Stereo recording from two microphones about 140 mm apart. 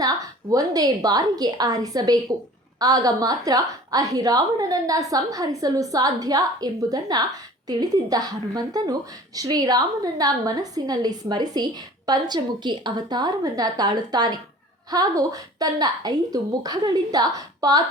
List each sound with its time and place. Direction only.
0.5 s a woman's voice: 25° right (ahead or behind)